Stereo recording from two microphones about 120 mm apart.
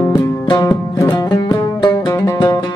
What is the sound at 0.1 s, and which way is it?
Music, 30° left (ahead or behind).